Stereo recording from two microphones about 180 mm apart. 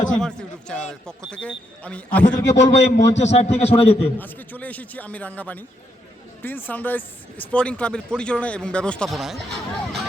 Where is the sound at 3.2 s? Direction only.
40° left (ahead or behind).